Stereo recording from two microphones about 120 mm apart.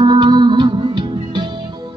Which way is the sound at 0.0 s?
40° right (ahead or behind).